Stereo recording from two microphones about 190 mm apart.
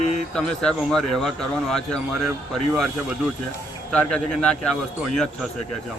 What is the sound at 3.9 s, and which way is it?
Speech, 5° left (ahead or behind).